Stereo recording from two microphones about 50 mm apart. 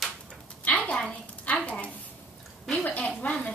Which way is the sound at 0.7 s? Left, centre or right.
Left.